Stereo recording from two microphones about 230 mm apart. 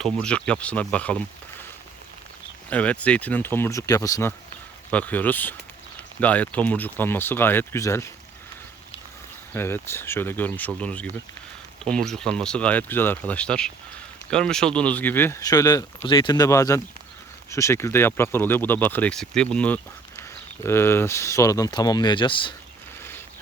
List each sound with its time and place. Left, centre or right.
0.0 s speech: centre
2.6 s speech: centre
9.5 s speech: centre